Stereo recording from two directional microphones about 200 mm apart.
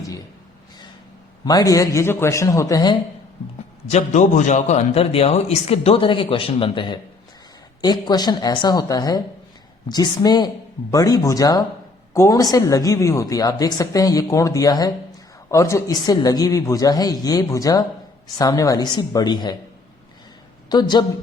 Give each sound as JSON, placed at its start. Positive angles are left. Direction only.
{"t": 1.5, "sound": "a woman's voice", "side_deg": 20}
{"t": 3.8, "sound": "a man's voice", "side_deg": 35}
{"t": 20.7, "sound": "a woman's voice", "side_deg": 20}